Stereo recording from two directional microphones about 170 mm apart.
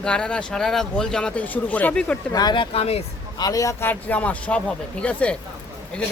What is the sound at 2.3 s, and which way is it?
Speech, 25° left (ahead or behind).